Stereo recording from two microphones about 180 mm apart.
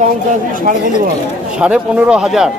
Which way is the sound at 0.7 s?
50° right (ahead or behind).